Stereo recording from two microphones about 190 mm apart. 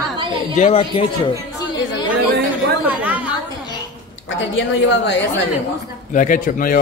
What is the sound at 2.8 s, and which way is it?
Chatter, 5° right (ahead or behind).